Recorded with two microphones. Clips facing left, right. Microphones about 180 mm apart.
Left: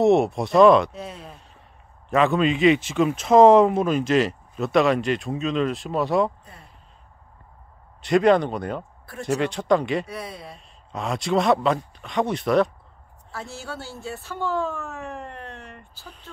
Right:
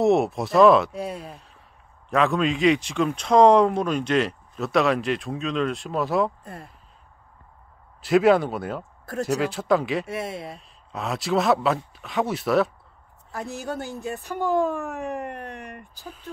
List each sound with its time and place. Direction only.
0.0 s a man's voice: centre (ahead or behind)
8.0 s a man's voice: 5° right (ahead or behind)
10.0 s speech: 25° right (ahead or behind)
10.4 s a man's voice: centre (ahead or behind)
13.3 s speech: 15° right (ahead or behind)